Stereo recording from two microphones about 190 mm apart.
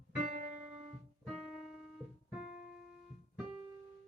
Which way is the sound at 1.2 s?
Centre (ahead or behind).